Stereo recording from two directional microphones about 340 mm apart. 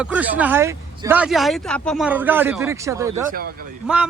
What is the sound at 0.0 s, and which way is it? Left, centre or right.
Speech, centre.